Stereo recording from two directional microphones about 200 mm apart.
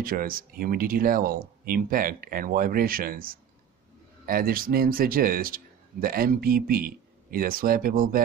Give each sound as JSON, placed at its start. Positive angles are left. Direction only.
{"t": 0.0, "sound": "a man's voice", "side_deg": -45}